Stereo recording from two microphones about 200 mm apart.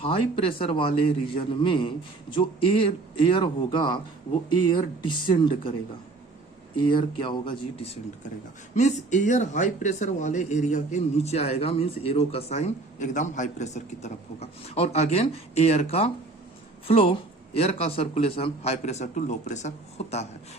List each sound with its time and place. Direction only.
0.0 s a man's voice: 25° left (ahead or behind)
6.8 s a man's voice: 25° left (ahead or behind)